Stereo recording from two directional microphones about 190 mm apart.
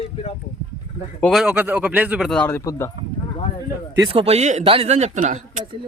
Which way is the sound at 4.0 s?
30° right (ahead or behind).